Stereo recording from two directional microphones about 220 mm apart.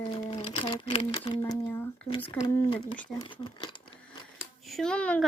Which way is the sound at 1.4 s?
10° left (ahead or behind).